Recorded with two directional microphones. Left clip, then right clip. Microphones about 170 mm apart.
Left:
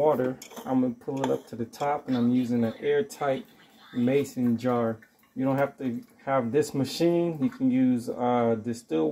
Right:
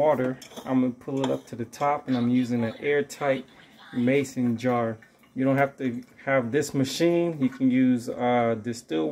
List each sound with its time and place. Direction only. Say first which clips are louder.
0.7 s speech: right 1 dB; 15° right (ahead or behind)